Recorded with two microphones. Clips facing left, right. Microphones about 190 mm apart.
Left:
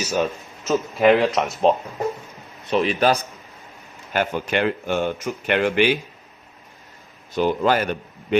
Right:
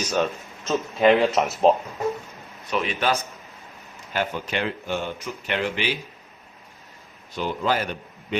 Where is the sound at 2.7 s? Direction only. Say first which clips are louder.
Left 5 dB; 35° left (ahead or behind).